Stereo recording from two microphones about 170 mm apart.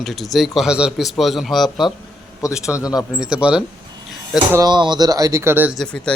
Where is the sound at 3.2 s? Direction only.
5° right (ahead or behind).